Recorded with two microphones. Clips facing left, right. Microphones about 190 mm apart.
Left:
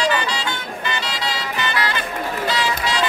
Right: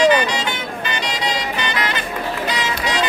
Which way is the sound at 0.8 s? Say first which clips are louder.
Right 2 dB; 20° right (ahead or behind).